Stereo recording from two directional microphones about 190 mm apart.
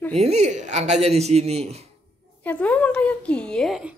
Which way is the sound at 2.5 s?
10° left (ahead or behind).